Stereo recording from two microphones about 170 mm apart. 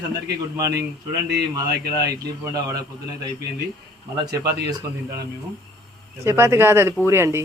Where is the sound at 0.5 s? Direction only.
20° right (ahead or behind).